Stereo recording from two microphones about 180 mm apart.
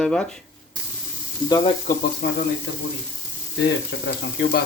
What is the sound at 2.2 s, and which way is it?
Speech, 65° left (ahead or behind).